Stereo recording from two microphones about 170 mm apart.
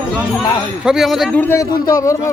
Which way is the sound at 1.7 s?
20° left (ahead or behind).